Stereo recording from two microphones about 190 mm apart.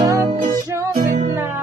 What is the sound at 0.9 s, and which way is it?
Music, 35° right (ahead or behind).